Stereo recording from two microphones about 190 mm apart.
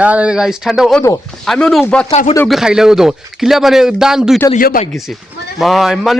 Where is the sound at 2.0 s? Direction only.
35° left (ahead or behind).